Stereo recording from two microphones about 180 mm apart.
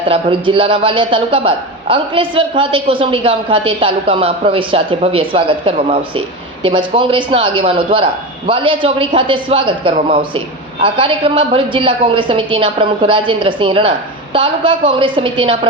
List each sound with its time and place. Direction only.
0.1 s a man's voice: 30° right (ahead or behind)